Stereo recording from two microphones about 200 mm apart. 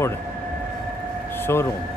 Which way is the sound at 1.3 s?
10° left (ahead or behind).